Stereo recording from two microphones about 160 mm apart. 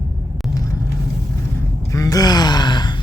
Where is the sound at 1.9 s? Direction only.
20° left (ahead or behind).